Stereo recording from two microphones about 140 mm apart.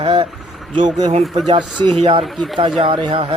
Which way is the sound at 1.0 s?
50° right (ahead or behind).